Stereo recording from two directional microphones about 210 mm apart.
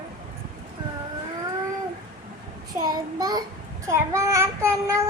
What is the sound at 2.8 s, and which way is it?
A child's voice, 20° right (ahead or behind).